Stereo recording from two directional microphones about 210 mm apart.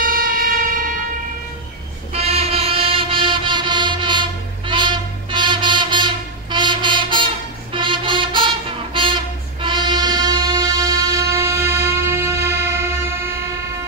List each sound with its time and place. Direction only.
0.0 s music: 45° right (ahead or behind)
2.1 s music: 30° right (ahead or behind); by 13.3 s 10° right (ahead or behind)